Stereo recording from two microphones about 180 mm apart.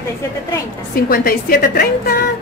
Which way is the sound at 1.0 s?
55° left (ahead or behind).